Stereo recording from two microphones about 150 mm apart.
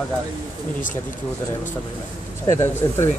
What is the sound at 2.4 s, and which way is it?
Speech, 20° left (ahead or behind).